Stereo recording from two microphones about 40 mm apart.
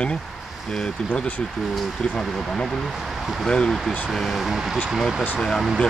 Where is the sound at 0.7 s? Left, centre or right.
Centre.